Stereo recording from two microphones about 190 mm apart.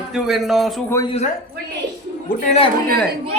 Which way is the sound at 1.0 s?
35° left (ahead or behind).